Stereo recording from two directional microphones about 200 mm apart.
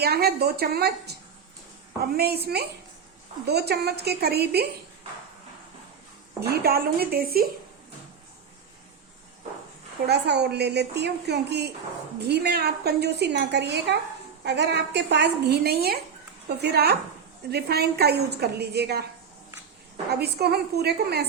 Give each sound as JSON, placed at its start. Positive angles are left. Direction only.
{"t": 0.0, "sound": "a woman's voice", "side_deg": -50}
{"t": 2.1, "sound": "a woman's voice", "side_deg": -50}
{"t": 6.4, "sound": "a woman's voice", "side_deg": -50}
{"t": 10.1, "sound": "a woman's voice", "side_deg": -55}
{"t": 20.1, "sound": "a woman's voice", "side_deg": -55}